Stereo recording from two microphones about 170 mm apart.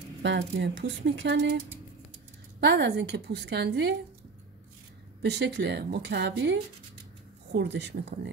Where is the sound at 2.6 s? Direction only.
80° right.